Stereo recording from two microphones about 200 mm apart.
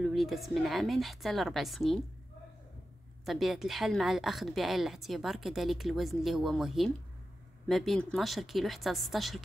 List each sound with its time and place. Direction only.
0.0 s a woman's voice: centre (ahead or behind)
3.3 s a woman's voice: centre (ahead or behind)